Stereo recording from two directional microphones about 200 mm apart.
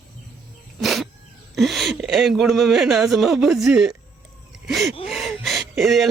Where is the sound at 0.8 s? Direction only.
Centre (ahead or behind).